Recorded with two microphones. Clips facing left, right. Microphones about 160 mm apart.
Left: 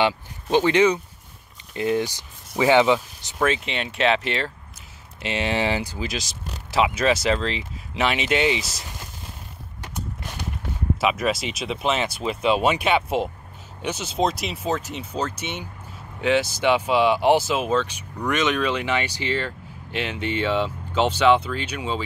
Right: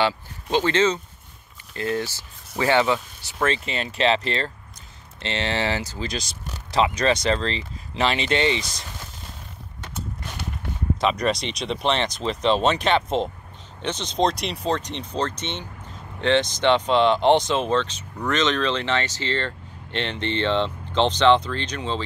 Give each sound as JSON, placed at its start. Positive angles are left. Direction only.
{"t": 0.0, "sound": "speech", "side_deg": 15}
{"t": 3.3, "sound": "speech", "side_deg": 5}
{"t": 11.0, "sound": "speech", "side_deg": 5}